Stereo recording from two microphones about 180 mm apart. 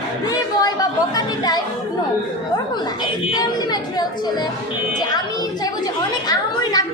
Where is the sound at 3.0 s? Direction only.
20° left (ahead or behind).